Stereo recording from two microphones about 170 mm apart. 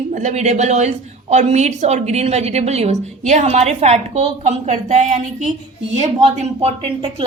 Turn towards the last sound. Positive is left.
turn(degrees=-35)  # may be behind; listen again after turning